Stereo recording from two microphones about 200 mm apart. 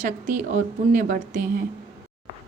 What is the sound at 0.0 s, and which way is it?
A woman's voice, 35° right (ahead or behind).